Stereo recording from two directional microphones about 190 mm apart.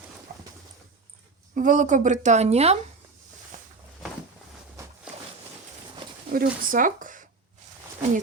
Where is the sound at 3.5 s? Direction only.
45° right (ahead or behind).